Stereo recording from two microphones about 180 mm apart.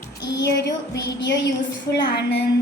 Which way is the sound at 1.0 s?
75° left (ahead or behind).